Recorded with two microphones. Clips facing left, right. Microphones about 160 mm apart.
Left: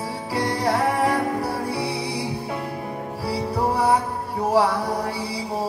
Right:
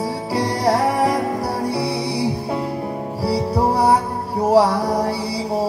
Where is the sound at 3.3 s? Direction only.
75° right (ahead or behind).